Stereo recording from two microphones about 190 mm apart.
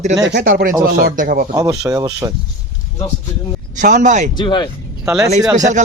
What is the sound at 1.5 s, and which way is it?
Speech, 20° right (ahead or behind).